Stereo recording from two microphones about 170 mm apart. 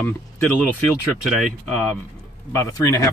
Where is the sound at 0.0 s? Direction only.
10° left (ahead or behind).